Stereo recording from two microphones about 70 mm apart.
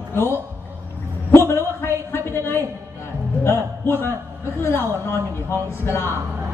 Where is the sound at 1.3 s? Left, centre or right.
Left.